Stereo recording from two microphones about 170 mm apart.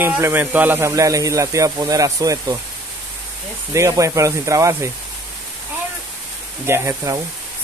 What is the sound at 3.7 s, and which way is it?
Speech, 20° right (ahead or behind).